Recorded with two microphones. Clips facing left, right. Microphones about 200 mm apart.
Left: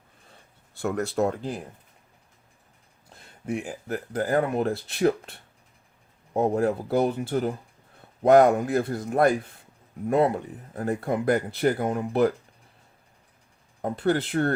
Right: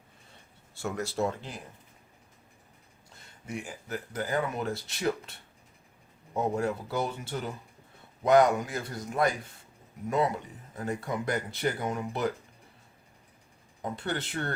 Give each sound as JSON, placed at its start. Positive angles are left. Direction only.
{"t": 0.7, "sound": "speech", "side_deg": 55}
{"t": 3.4, "sound": "speech", "side_deg": 55}
{"t": 13.8, "sound": "speech", "side_deg": 55}